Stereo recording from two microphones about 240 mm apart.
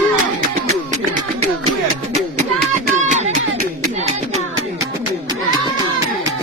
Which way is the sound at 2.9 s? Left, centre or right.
Right.